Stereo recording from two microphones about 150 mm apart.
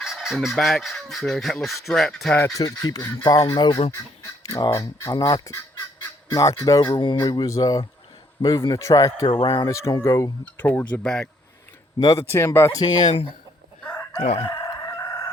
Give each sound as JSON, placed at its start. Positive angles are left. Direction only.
{"t": 0.0, "sound": "speech", "side_deg": 0}
{"t": 4.4, "sound": "speech", "side_deg": 20}
{"t": 9.2, "sound": "speech", "side_deg": 35}
{"t": 9.5, "sound": "speech", "side_deg": 25}
{"t": 11.9, "sound": "speech", "side_deg": 25}
{"t": 14.2, "sound": "crowing", "side_deg": 45}
{"t": 14.4, "sound": "crowing", "side_deg": 25}